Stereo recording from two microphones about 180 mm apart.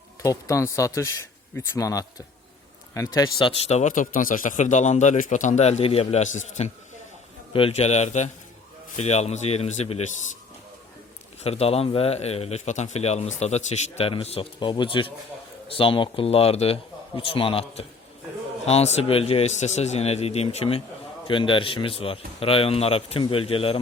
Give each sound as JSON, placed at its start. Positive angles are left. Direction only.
{"t": 0.2, "sound": "a man's voice", "side_deg": 15}
{"t": 3.7, "sound": "a man's voice", "side_deg": 40}
{"t": 11.4, "sound": "a man's voice", "side_deg": 35}